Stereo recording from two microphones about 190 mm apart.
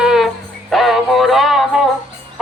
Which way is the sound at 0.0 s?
5° right (ahead or behind).